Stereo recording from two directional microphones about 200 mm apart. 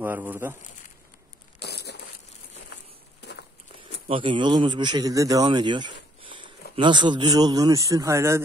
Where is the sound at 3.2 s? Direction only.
55° left (ahead or behind).